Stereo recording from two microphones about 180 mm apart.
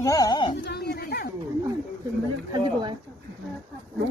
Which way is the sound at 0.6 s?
65° left (ahead or behind).